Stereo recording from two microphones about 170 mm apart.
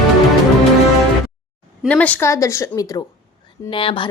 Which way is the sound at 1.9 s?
10° left (ahead or behind).